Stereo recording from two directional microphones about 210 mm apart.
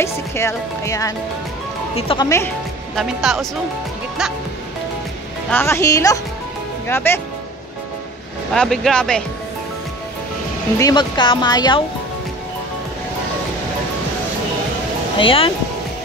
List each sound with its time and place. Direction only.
0.0 s speech: 15° left (ahead or behind)
2.0 s speech: 25° left (ahead or behind)
2.2 s speech: 10° left (ahead or behind)
3.0 s speech: centre (ahead or behind)
5.5 s speech: 10° left (ahead or behind)
8.5 s speech: centre (ahead or behind)
10.8 s speech: 20° left (ahead or behind)
15.1 s speech: 25° left (ahead or behind)